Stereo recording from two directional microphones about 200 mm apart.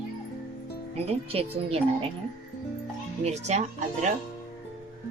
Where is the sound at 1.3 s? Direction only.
30° right (ahead or behind).